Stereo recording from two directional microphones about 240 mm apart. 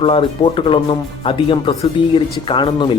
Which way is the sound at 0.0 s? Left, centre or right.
Left.